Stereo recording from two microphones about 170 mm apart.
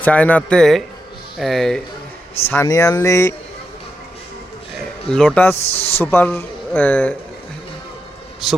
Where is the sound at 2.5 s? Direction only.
15° left (ahead or behind).